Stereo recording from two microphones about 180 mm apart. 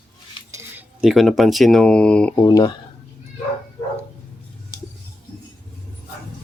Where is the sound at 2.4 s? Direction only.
20° left (ahead or behind).